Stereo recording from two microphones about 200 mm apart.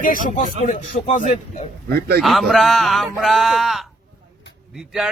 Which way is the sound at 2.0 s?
50° right (ahead or behind).